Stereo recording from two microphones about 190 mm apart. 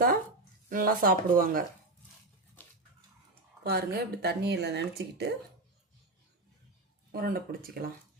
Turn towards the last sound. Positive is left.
turn(degrees=-50)  # may be behind; listen again after turning